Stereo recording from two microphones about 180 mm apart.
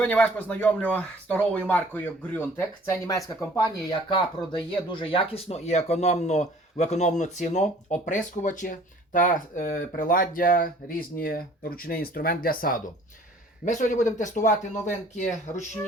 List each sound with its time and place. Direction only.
0.0 s speech: 5° left (ahead or behind); by 15.6 s 40° left (ahead or behind)